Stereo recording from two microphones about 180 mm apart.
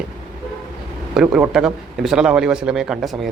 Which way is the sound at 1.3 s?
5° right (ahead or behind).